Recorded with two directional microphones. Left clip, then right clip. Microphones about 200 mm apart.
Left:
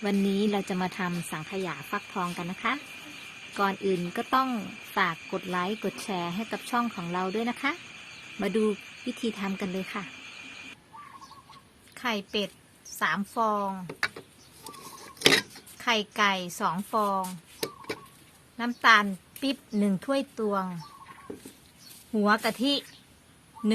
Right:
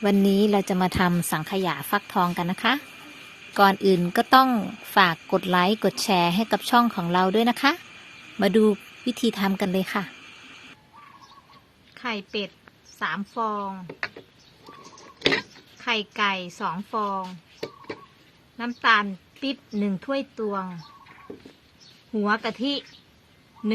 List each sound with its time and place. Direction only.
0.3 s a woman's voice: 30° right (ahead or behind); by 10.1 s 50° right (ahead or behind)
11.9 s a woman's voice: 15° left (ahead or behind)
15.0 s a sound: 25° left (ahead or behind)
15.8 s a woman's voice: 10° left (ahead or behind)
17.6 s a sound: 25° left (ahead or behind)
18.5 s a woman's voice: 10° left (ahead or behind)
22.1 s a woman's voice: 10° left (ahead or behind)